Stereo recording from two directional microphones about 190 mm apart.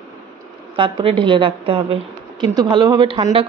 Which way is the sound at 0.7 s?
30° right (ahead or behind).